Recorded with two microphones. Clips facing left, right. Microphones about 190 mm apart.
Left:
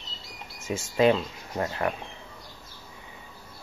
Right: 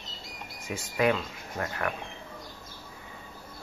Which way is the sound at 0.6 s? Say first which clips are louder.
Left 5 dB; 25° left (ahead or behind).